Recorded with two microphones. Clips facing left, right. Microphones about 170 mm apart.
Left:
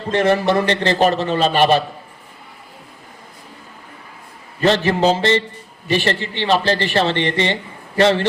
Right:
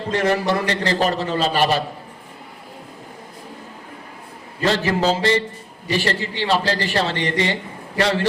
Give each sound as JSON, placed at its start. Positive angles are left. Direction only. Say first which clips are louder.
{"t": 0.1, "sound": "speech", "louder": "left 4 dB", "side_deg": 20}
{"t": 4.6, "sound": "speech", "louder": "left 4 dB", "side_deg": 20}